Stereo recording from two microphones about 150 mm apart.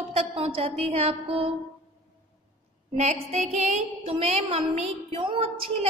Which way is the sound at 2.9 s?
45° right (ahead or behind).